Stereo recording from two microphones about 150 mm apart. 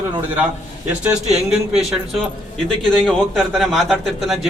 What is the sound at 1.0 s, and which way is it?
A man's voice, 5° right (ahead or behind).